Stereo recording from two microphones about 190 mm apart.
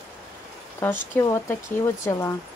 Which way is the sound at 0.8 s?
15° left (ahead or behind).